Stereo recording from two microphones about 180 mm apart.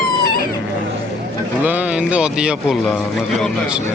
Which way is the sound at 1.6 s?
10° right (ahead or behind).